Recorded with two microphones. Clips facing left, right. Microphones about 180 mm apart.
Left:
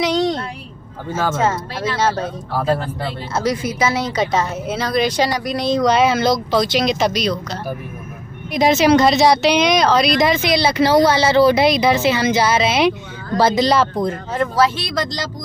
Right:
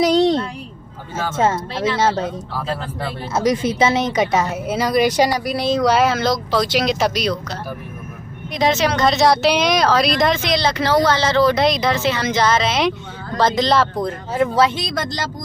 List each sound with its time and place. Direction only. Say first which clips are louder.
0.0 s a sound: right 3 dB; 35° right (ahead or behind)
1.3 s speech: right 1 dB; 25° right (ahead or behind)
2.5 s speech: left 6 dB; 50° left (ahead or behind)
3.3 s speech: right 3 dB; 20° right (ahead or behind); by 7.3 s 5° right (ahead or behind)
8.5 s speech: left 5 dB; 10° left (ahead or behind)
14.0 s speech: right 1 dB; 5° right (ahead or behind)